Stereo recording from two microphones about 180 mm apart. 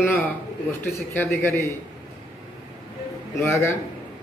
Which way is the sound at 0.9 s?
15° left (ahead or behind).